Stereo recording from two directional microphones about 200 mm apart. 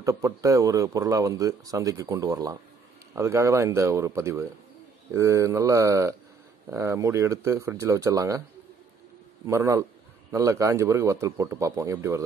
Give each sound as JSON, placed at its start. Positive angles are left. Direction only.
{"t": 0.0, "sound": "speech", "side_deg": -15}
{"t": 9.5, "sound": "speech", "side_deg": -15}